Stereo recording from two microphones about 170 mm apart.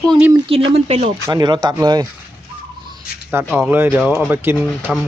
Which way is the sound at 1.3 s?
25° right (ahead or behind).